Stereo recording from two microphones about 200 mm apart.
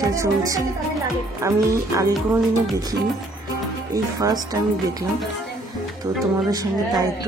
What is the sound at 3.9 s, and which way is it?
Speech, 20° right (ahead or behind).